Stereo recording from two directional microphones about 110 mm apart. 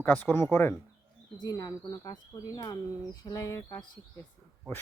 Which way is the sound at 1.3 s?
35° left (ahead or behind).